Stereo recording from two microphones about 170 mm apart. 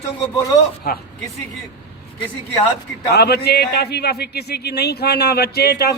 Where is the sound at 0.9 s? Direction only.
60° left (ahead or behind).